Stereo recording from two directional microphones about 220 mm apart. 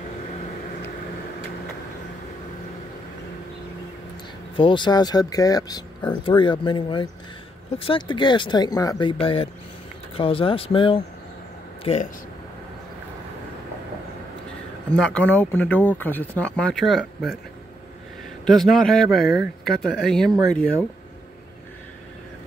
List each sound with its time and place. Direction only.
4.6 s speech: 20° left (ahead or behind)
15.0 s speech: 5° left (ahead or behind)
18.4 s speech: centre (ahead or behind)